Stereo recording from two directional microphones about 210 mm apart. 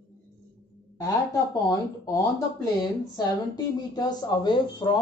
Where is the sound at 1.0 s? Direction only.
15° left (ahead or behind).